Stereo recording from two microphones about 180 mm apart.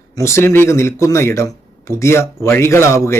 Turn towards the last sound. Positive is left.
turn(degrees=15)  # may be behind; listen again after turning